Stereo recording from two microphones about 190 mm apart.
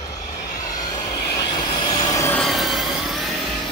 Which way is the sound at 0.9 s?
20° left (ahead or behind).